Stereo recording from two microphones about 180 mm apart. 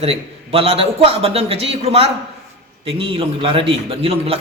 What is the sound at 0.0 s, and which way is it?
A man's voice, 35° right (ahead or behind).